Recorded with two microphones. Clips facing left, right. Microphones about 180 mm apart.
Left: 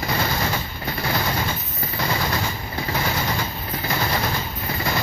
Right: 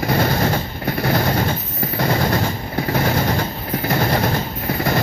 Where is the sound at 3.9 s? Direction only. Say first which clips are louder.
Right 6 dB; 50° right (ahead or behind).